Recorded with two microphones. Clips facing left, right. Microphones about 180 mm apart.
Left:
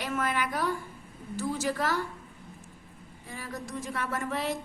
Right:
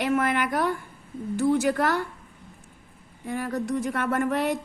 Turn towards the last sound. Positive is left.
turn(degrees=-60)  # may be behind; listen again after turning